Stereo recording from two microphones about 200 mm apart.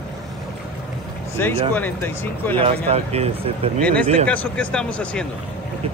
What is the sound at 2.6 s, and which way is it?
Speech, 30° right (ahead or behind).